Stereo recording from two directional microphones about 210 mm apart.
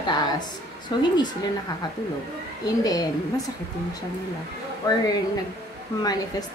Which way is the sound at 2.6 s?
15° left (ahead or behind).